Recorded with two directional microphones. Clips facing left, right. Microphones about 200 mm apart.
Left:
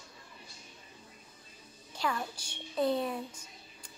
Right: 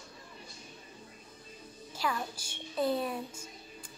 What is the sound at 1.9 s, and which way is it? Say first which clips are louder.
A woman's voice: even; 5° right (ahead or behind).